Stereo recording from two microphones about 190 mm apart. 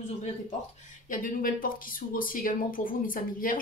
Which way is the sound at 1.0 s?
45° left (ahead or behind).